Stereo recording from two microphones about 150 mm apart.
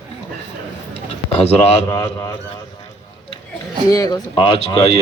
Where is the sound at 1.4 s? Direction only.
45° left (ahead or behind).